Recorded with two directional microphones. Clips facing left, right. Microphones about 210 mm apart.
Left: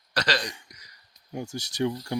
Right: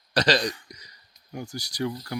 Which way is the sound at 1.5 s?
25° left (ahead or behind).